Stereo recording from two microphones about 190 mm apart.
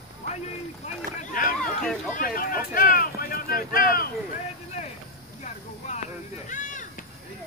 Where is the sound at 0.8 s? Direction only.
45° left (ahead or behind).